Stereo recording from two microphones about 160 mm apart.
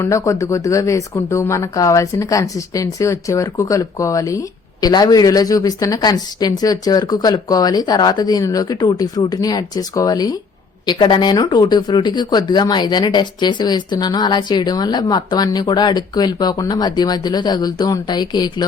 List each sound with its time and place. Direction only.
0.0 s speech: 20° left (ahead or behind)